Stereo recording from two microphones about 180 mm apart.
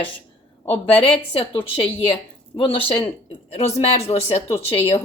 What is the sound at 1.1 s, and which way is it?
A woman's voice, 30° left (ahead or behind).